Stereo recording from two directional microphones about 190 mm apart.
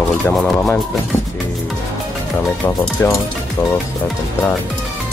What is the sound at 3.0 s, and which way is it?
Speech, 15° left (ahead or behind).